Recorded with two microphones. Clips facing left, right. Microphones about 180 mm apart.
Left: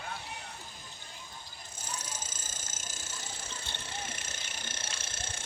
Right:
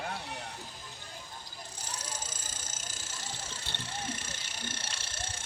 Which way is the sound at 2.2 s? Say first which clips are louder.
Right 1 dB; 45° left (ahead or behind).